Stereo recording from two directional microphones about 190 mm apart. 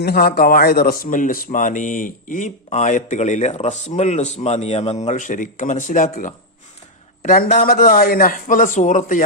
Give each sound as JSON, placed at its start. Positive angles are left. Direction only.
{"t": 0.0, "sound": "speech", "side_deg": 55}
{"t": 7.2, "sound": "a man's voice", "side_deg": 45}